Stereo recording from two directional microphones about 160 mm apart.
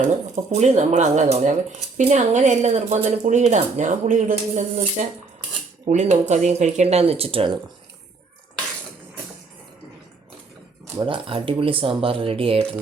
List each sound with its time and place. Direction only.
0.5 s speech: 45° right (ahead or behind)
10.9 s speech: 30° right (ahead or behind)